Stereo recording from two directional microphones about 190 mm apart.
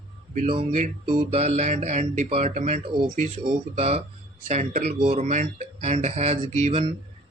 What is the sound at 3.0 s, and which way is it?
Speech, 45° right (ahead or behind).